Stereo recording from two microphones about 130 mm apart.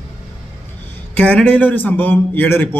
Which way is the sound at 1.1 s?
10° left (ahead or behind).